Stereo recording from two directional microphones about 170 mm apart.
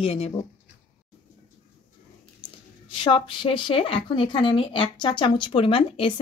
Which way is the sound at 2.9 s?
30° left (ahead or behind).